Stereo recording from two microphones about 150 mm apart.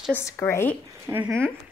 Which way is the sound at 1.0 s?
15° right (ahead or behind).